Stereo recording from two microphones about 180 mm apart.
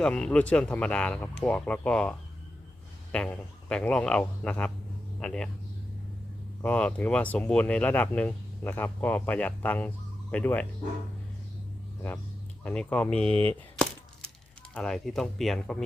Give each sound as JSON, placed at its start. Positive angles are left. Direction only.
{"t": 0.0, "sound": "speech", "side_deg": 5}
{"t": 6.6, "sound": "speech", "side_deg": 5}
{"t": 12.6, "sound": "speech", "side_deg": 5}
{"t": 13.3, "sound": "speech", "side_deg": -30}
{"t": 14.7, "sound": "speech", "side_deg": 5}